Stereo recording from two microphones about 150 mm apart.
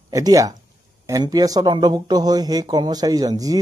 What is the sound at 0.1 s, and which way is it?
A man's voice, 25° right (ahead or behind).